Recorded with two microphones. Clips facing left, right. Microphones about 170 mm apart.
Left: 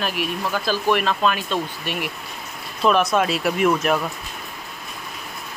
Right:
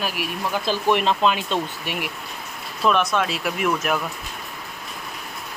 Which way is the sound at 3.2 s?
40° left (ahead or behind).